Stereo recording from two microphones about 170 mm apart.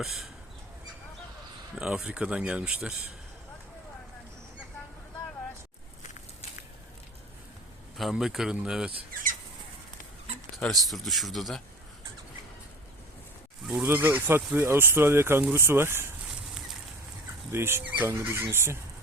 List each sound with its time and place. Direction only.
0.0 s speech: centre (ahead or behind)
1.7 s speech: 5° right (ahead or behind)
7.9 s speech: centre (ahead or behind)
10.6 s speech: centre (ahead or behind)
13.7 s speech: 10° right (ahead or behind)
17.5 s speech: 15° right (ahead or behind)